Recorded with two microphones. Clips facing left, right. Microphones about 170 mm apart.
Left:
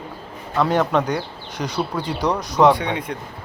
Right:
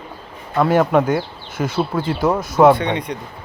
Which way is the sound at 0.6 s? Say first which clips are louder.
Right 4 dB; 10° right (ahead or behind).